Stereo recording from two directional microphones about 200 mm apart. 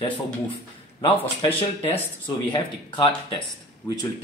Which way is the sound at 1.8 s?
30° left (ahead or behind).